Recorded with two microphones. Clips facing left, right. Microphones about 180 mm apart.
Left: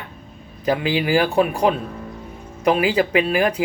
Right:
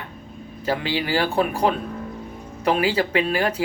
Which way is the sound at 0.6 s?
15° left (ahead or behind).